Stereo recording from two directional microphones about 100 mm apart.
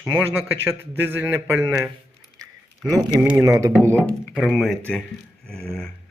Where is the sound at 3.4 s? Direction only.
30° right (ahead or behind).